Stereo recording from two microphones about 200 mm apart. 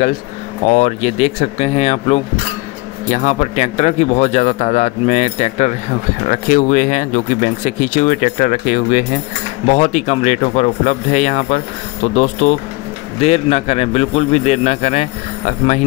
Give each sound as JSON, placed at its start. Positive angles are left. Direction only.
{"t": 0.7, "sound": "speech", "side_deg": 35}